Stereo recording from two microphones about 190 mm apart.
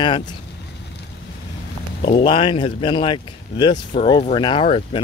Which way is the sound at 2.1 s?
30° left (ahead or behind).